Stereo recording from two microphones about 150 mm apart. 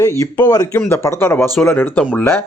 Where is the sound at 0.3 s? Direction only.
25° left (ahead or behind).